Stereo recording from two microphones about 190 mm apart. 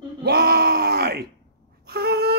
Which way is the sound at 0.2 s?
60° right (ahead or behind).